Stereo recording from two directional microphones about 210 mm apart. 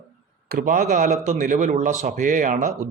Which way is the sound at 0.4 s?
40° right (ahead or behind).